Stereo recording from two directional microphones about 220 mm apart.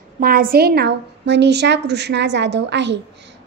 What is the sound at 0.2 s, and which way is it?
A woman's voice, 40° right (ahead or behind).